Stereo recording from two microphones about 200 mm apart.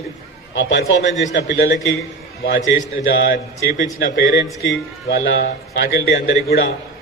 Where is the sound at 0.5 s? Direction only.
65° left (ahead or behind).